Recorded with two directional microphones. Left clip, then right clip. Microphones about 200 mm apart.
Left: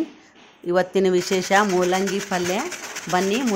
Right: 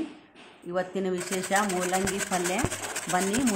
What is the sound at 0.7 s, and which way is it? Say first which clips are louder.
Speech: left 10 dB; 50° left (ahead or behind).